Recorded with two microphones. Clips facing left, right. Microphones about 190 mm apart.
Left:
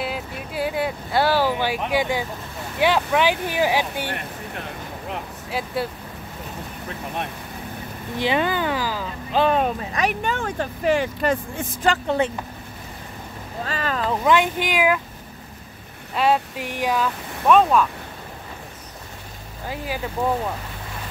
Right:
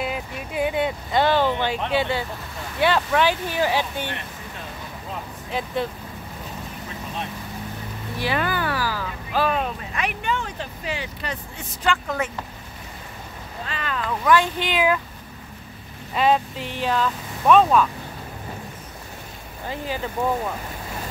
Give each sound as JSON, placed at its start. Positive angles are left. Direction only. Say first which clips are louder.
{"t": 0.0, "sound": "a sound", "louder": "even", "side_deg": 5}
{"t": 2.8, "sound": "speech", "louder": "left 1 dB", "side_deg": 15}
{"t": 5.5, "sound": "speech", "louder": "even", "side_deg": 5}
{"t": 8.2, "sound": "speech", "louder": "left 3 dB", "side_deg": 20}
{"t": 9.6, "sound": "speech", "louder": "left 5 dB", "side_deg": 40}
{"t": 13.7, "sound": "boat", "louder": "left 4 dB", "side_deg": 40}
{"t": 14.2, "sound": "speech", "louder": "even", "side_deg": 20}
{"t": 16.2, "sound": "speech", "louder": "even", "side_deg": 10}